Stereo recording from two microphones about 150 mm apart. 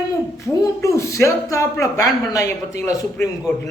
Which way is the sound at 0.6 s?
20° left (ahead or behind).